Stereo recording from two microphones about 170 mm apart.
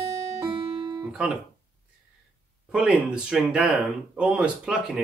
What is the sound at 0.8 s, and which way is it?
Guitar, 25° right (ahead or behind).